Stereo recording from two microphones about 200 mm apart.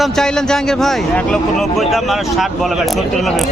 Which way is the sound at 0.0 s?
Centre (ahead or behind).